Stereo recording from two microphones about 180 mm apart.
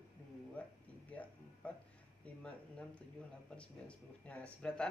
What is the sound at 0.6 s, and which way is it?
Speech, 10° left (ahead or behind).